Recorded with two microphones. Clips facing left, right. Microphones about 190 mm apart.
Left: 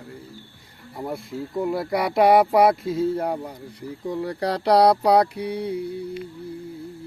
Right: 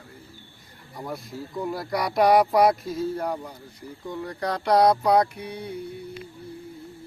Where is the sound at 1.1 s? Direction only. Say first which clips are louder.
Left 4 dB; 25° left (ahead or behind).